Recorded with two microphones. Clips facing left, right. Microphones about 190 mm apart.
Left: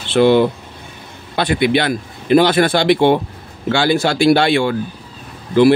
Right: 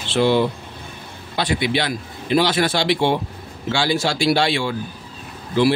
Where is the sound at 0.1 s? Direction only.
55° left (ahead or behind).